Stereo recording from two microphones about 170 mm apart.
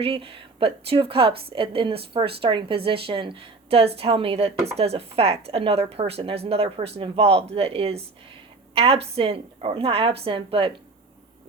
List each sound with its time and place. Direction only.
0.0 s a woman's voice: 30° right (ahead or behind)